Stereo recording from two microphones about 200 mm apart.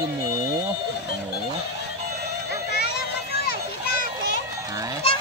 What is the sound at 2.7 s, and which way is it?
Children playing, 55° left (ahead or behind).